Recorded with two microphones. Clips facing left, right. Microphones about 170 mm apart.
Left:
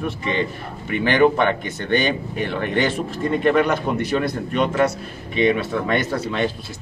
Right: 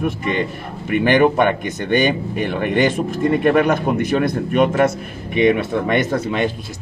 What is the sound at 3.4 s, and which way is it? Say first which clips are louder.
Speech: right 1 dB; 50° right (ahead or behind).